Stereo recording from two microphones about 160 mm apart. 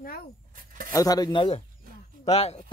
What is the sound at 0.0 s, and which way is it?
Speech, 70° left (ahead or behind).